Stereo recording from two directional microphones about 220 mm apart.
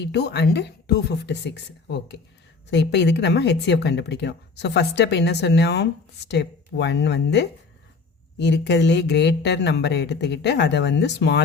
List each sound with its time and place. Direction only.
0.0 s speech: 50° left (ahead or behind)